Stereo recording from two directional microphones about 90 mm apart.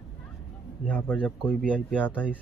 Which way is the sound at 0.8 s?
20° left (ahead or behind).